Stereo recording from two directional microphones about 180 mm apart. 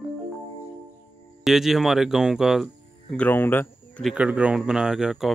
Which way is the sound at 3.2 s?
10° left (ahead or behind).